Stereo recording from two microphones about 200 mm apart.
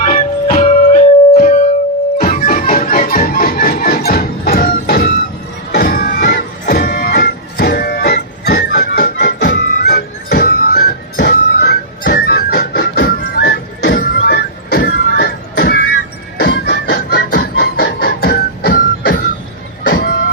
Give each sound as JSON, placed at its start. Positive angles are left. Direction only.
{"t": 0.0, "sound": "music", "side_deg": 45}
{"t": 19.8, "sound": "vehicle", "side_deg": 50}